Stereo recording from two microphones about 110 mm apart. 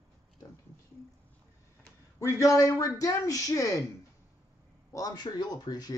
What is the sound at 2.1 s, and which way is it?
A man's voice, 25° left (ahead or behind).